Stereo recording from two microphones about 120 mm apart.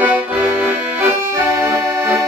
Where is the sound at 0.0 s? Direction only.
15° right (ahead or behind).